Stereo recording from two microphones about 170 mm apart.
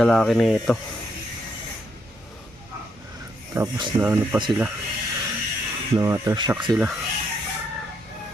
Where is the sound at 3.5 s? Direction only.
15° right (ahead or behind).